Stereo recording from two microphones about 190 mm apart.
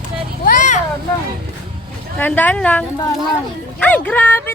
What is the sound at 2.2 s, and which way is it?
Speech, 10° left (ahead or behind).